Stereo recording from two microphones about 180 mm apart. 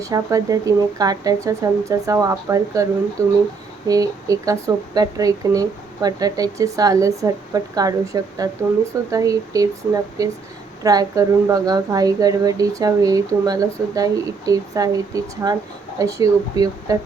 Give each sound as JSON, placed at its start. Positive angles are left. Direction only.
{"t": 0.0, "sound": "speech", "side_deg": -20}
{"t": 3.8, "sound": "speech", "side_deg": -20}